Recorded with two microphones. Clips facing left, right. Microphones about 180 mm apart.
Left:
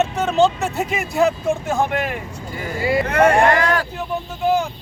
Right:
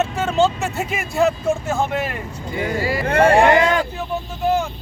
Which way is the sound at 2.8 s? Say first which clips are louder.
Left 8 dB; 25° left (ahead or behind).